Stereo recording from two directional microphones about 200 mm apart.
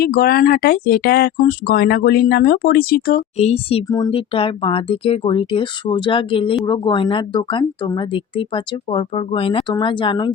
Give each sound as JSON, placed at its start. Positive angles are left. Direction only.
{"t": 0.0, "sound": "speech", "side_deg": 50}
{"t": 3.3, "sound": "speech", "side_deg": 30}
{"t": 3.8, "sound": "speech", "side_deg": 15}